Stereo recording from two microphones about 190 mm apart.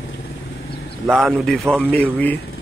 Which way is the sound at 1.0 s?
5° right (ahead or behind).